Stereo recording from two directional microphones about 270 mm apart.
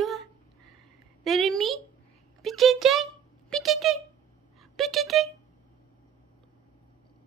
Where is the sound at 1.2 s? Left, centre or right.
Centre.